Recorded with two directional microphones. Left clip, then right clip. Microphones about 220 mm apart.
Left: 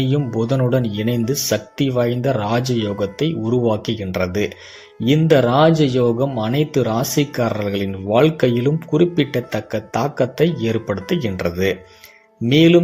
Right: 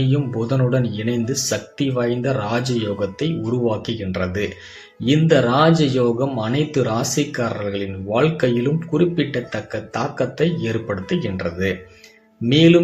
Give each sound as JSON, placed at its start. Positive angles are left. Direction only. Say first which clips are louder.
{"t": 0.0, "sound": "speech", "louder": "left 2 dB", "side_deg": 35}